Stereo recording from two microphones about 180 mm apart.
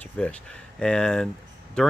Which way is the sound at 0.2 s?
5° left (ahead or behind).